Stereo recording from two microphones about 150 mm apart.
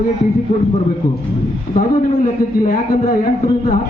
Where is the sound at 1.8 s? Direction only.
70° left (ahead or behind).